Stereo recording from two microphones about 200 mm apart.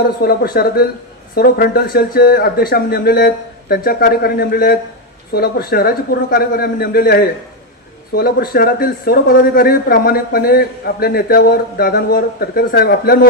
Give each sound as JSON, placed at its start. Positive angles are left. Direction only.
{"t": 0.2, "sound": "a man's voice", "side_deg": 50}